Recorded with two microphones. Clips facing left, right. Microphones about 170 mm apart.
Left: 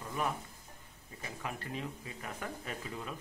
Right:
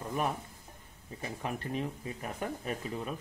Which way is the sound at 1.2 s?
25° right (ahead or behind).